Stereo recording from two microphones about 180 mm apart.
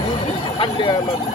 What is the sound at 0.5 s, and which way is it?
Speech, 25° left (ahead or behind).